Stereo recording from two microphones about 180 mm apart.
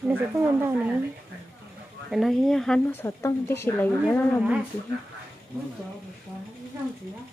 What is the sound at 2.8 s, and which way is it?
Speech, 15° left (ahead or behind).